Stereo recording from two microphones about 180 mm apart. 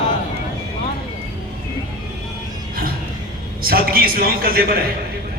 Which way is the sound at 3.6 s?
55° right (ahead or behind).